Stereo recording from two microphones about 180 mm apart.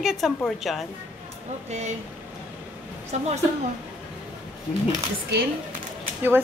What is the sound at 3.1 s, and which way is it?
Speech, 40° right (ahead or behind).